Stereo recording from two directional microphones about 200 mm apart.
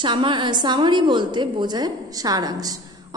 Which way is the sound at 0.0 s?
25° right (ahead or behind).